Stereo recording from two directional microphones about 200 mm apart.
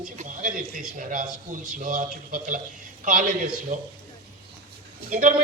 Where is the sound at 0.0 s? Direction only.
40° right (ahead or behind).